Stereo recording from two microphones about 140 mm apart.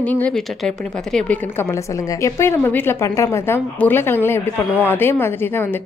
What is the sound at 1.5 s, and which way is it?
A woman's voice, 20° left (ahead or behind).